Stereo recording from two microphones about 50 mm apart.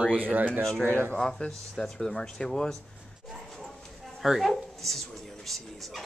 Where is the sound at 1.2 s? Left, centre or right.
Centre.